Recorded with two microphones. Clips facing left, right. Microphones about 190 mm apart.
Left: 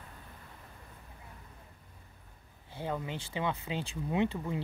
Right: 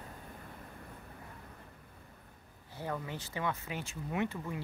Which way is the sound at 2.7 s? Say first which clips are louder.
Left 2 dB; 20° left (ahead or behind).